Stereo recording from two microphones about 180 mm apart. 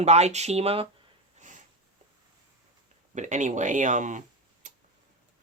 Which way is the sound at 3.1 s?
40° right (ahead or behind).